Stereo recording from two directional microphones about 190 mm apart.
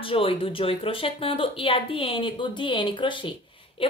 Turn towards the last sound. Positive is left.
turn(degrees=30)  # may be behind; listen again after turning